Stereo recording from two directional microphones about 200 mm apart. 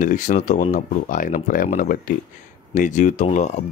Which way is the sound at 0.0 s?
40° left (ahead or behind).